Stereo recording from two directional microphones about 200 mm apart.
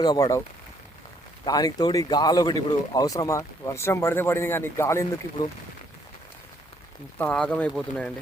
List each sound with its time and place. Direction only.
0.0 s speech: 20° left (ahead or behind)
1.5 s speech: 20° left (ahead or behind)
7.2 s speech: 5° left (ahead or behind)